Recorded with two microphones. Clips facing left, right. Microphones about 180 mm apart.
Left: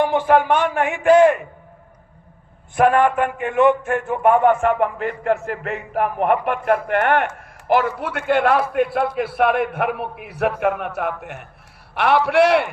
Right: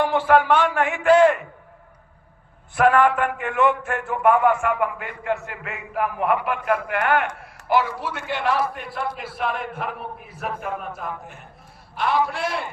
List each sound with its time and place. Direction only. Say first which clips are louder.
0.0 s a man's voice: left 2 dB; 15° left (ahead or behind)
2.7 s a man's voice: left 2 dB; 20° left (ahead or behind)
4.4 s a man's voice: left 4 dB; 35° left (ahead or behind); by 12.7 s 70° left (ahead or behind)